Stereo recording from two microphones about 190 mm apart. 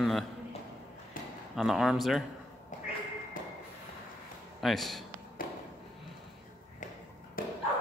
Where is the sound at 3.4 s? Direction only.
45° left (ahead or behind).